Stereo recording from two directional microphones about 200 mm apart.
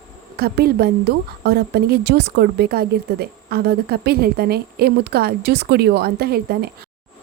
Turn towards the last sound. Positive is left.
turn(degrees=-50)  # may be behind; listen again after turning